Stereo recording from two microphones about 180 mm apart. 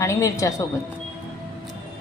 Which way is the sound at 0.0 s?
15° left (ahead or behind).